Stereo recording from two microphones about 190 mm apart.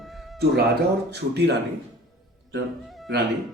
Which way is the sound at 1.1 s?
65° right (ahead or behind).